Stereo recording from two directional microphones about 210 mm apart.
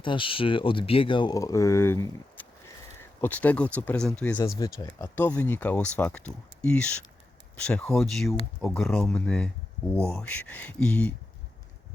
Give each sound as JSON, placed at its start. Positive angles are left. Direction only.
{"t": 0.0, "sound": "speech", "side_deg": 25}